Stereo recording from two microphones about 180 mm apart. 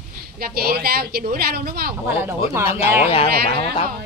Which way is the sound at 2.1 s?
15° right (ahead or behind).